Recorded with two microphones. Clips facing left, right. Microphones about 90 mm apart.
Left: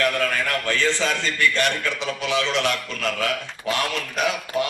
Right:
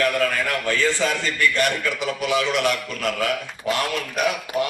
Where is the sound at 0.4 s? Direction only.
15° right (ahead or behind).